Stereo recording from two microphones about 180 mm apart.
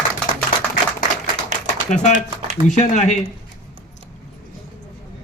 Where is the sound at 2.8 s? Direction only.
40° left (ahead or behind).